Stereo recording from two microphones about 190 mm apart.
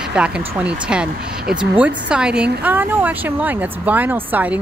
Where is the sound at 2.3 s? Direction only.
60° right (ahead or behind).